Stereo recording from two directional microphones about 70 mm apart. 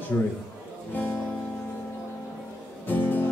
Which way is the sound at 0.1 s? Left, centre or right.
Centre.